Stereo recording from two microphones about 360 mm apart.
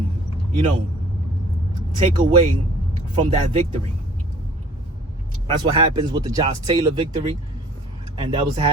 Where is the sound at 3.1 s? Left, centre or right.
Centre.